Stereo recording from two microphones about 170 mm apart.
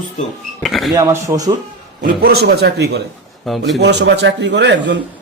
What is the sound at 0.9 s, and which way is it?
Speech, 20° right (ahead or behind).